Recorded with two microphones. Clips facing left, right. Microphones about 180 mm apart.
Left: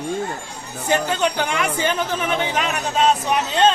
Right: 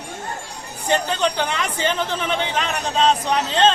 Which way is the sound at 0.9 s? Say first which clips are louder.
Left 1 dB; 10° left (ahead or behind).